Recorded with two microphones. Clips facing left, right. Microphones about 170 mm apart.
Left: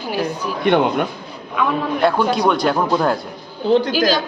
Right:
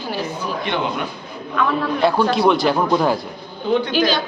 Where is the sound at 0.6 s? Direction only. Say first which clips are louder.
Left 9 dB; 55° left (ahead or behind).